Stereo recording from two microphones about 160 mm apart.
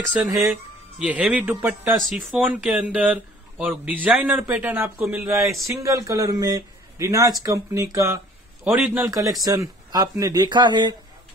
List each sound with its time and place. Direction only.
0.5 s speech: 5° right (ahead or behind)
4.9 s speech: centre (ahead or behind)
5.2 s speech: 15° right (ahead or behind)